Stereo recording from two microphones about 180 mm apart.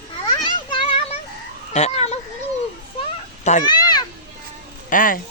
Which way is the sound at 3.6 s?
25° left (ahead or behind).